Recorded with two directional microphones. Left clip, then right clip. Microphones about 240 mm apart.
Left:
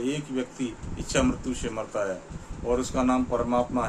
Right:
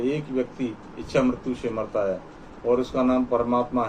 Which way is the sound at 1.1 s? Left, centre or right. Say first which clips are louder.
Right 3 dB; left.